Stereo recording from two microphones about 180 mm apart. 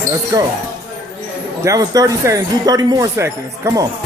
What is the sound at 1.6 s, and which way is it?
Speech, 20° right (ahead or behind).